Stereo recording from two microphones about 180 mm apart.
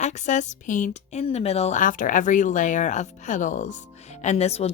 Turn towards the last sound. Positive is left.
turn(degrees=35)  # may be behind; listen again after turning